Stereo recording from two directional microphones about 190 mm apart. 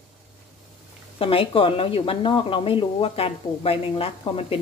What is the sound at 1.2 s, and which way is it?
Speech, 30° left (ahead or behind).